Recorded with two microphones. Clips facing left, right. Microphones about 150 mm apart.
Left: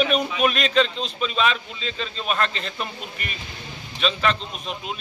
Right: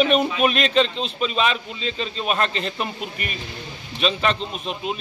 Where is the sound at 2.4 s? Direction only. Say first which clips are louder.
Right 2 dB; 35° right (ahead or behind).